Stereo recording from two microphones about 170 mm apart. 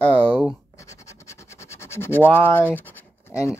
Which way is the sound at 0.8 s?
20° left (ahead or behind).